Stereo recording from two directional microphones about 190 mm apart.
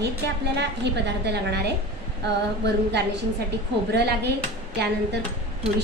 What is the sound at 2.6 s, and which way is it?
A woman's voice, 60° right (ahead or behind).